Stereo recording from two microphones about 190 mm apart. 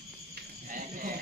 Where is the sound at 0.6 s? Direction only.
45° right (ahead or behind).